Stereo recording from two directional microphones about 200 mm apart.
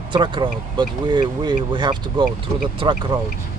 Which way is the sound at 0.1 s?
25° right (ahead or behind).